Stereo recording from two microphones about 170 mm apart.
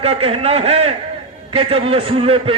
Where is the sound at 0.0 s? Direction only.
35° right (ahead or behind).